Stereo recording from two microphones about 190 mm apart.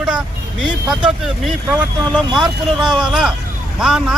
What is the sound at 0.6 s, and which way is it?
Speech, 5° right (ahead or behind).